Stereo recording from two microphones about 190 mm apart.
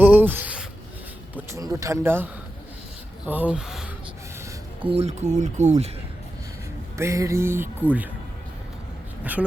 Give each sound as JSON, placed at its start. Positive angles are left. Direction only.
{"t": 0.0, "sound": "a sound", "side_deg": -10}
{"t": 1.4, "sound": "speech", "side_deg": -15}
{"t": 4.8, "sound": "speech", "side_deg": -30}
{"t": 6.9, "sound": "speech", "side_deg": -15}